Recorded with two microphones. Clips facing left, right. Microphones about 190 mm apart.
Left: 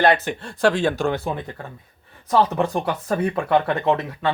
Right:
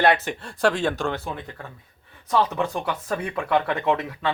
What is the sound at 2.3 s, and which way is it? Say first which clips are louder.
Speech: left 4 dB; 40° left (ahead or behind).